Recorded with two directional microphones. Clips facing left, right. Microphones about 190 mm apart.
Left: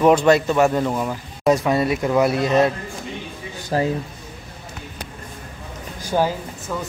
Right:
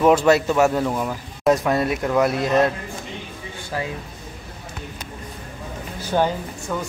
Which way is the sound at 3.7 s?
40° left (ahead or behind).